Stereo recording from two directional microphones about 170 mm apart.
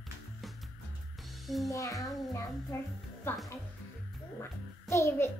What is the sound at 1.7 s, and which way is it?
A child's voice, 20° left (ahead or behind).